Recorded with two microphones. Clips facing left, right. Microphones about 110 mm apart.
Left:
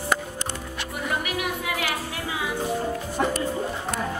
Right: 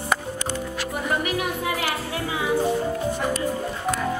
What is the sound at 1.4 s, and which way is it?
Music, 35° right (ahead or behind).